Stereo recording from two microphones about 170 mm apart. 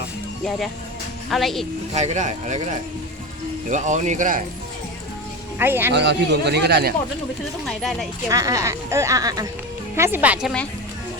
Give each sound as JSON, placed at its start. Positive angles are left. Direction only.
{"t": 1.3, "sound": "speech", "side_deg": 0}
{"t": 1.9, "sound": "speech", "side_deg": -45}
{"t": 5.5, "sound": "a woman's voice", "side_deg": -10}
{"t": 5.9, "sound": "a man's voice", "side_deg": -90}
{"t": 7.6, "sound": "speech", "side_deg": 0}
{"t": 8.3, "sound": "a woman's voice", "side_deg": -20}